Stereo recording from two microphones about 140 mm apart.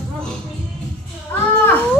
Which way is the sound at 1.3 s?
15° left (ahead or behind).